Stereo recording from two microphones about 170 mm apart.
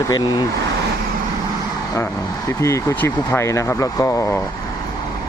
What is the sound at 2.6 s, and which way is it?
Speech, 15° left (ahead or behind).